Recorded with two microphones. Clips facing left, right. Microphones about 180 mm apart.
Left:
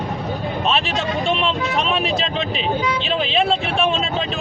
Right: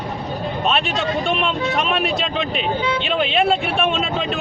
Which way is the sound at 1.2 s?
Centre (ahead or behind).